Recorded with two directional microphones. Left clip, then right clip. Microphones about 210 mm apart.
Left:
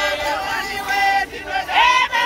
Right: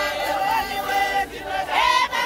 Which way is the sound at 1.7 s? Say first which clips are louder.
Left 4 dB; 65° right (ahead or behind).